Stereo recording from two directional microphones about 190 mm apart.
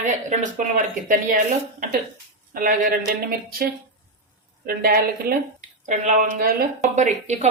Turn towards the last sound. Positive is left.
turn(degrees=-40)  # may be behind; listen again after turning